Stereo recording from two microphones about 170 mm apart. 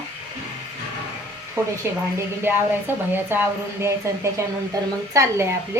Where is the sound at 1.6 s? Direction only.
15° right (ahead or behind).